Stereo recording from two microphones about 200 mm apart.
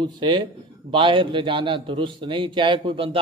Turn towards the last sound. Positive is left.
turn(degrees=-25)  # may be behind; listen again after turning